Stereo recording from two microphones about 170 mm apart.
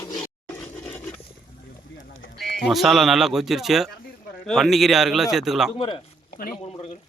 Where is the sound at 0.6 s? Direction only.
5° left (ahead or behind).